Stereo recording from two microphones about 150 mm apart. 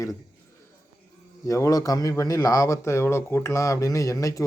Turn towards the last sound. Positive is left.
turn(degrees=20)  # may be behind; listen again after turning